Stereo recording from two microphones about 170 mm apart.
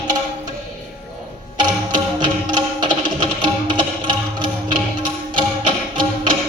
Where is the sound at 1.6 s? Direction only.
25° right (ahead or behind).